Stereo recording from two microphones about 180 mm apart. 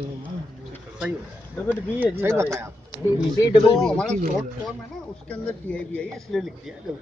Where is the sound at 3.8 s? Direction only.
5° left (ahead or behind).